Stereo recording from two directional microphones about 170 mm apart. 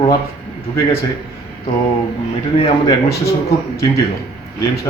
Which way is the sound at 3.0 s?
70° left (ahead or behind).